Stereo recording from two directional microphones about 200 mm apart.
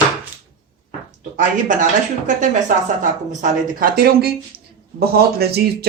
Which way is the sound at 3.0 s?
40° right (ahead or behind).